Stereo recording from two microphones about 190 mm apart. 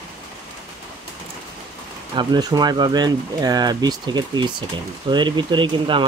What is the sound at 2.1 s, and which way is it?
Speech, 20° right (ahead or behind).